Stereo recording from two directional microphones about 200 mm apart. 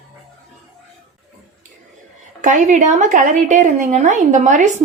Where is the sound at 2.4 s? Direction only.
40° right (ahead or behind).